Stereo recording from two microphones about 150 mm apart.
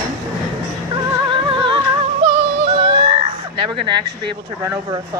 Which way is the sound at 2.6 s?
35° right (ahead or behind).